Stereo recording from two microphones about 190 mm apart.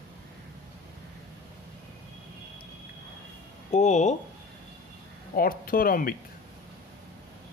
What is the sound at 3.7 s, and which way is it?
Speech, 40° left (ahead or behind).